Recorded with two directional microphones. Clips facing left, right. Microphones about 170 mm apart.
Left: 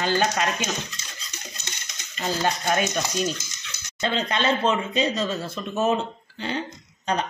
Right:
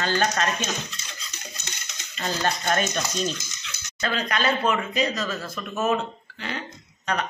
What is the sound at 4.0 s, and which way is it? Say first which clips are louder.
Speech: left 1 dB; 25° left (ahead or behind).